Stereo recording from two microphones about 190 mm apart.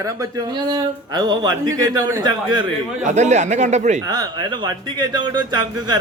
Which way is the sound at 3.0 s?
40° right (ahead or behind).